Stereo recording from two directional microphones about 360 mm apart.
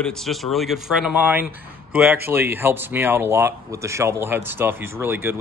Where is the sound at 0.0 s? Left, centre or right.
Centre.